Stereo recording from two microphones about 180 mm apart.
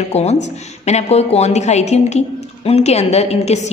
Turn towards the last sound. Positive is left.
turn(degrees=35)  # may be behind; listen again after turning